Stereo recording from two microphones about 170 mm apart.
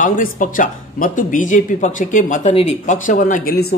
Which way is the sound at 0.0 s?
50° left (ahead or behind).